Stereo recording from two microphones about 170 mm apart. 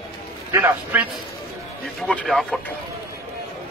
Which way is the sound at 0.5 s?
10° right (ahead or behind).